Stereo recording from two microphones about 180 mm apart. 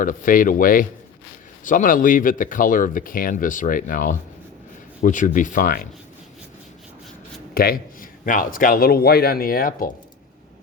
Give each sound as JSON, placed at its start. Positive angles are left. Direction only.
{"t": 0.0, "sound": "speech", "side_deg": 50}
{"t": 7.5, "sound": "a man's voice", "side_deg": 55}